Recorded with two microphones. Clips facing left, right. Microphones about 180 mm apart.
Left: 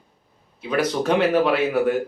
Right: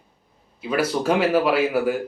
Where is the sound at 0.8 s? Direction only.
5° right (ahead or behind).